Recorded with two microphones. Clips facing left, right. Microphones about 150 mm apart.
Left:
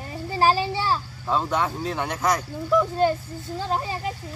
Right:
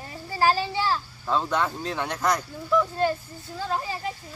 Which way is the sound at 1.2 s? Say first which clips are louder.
Left 1 dB; 5° left (ahead or behind).